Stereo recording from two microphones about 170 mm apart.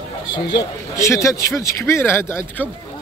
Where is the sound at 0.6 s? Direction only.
15° left (ahead or behind).